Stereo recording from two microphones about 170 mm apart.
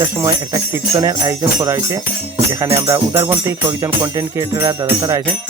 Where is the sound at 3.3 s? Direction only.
15° right (ahead or behind).